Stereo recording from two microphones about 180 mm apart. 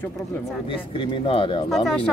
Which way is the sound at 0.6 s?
30° left (ahead or behind).